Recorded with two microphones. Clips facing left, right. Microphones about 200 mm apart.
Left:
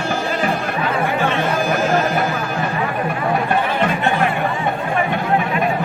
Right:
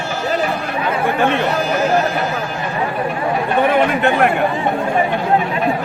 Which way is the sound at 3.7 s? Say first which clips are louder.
Right 4 dB; 60° right (ahead or behind).